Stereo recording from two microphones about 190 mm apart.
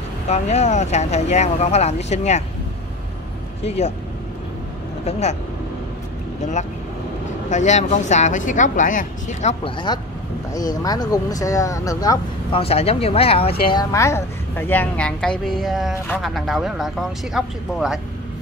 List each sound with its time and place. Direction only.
0.3 s a woman's voice: 35° left (ahead or behind)
3.6 s a woman's voice: 35° left (ahead or behind)
7.4 s a woman's voice: 40° left (ahead or behind)
10.5 s speech: 20° left (ahead or behind)
12.6 s a woman's voice: 30° left (ahead or behind)
13.7 s a woman's voice: 20° left (ahead or behind); by 18.0 s centre (ahead or behind)